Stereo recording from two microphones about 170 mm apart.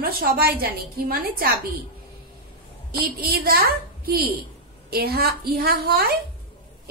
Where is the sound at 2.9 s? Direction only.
65° right (ahead or behind).